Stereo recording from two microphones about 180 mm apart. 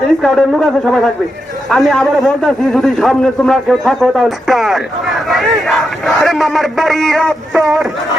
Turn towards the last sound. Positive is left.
turn(degrees=0)  # may be behind; listen again after turning